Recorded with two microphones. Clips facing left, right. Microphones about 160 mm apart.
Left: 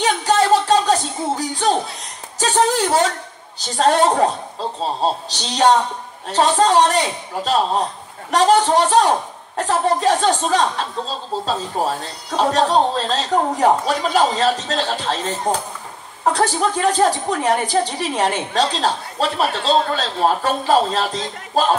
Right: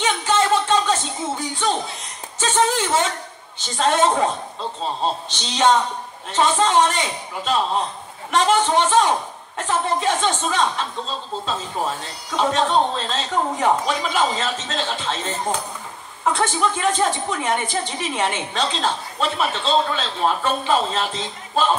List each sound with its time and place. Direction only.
0.0 s music: 40° left (ahead or behind)
2.3 s a woman's voice: 35° left (ahead or behind)
16.3 s a woman's voice: 40° left (ahead or behind)